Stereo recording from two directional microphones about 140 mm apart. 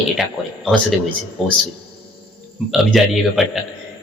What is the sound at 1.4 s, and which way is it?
Speech, centre (ahead or behind).